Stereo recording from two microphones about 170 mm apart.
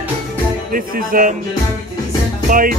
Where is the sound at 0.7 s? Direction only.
55° right (ahead or behind).